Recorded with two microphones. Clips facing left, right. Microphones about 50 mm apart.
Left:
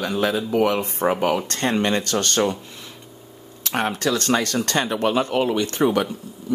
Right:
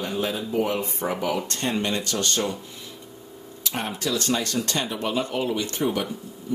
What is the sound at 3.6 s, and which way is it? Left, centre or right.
Speech, left.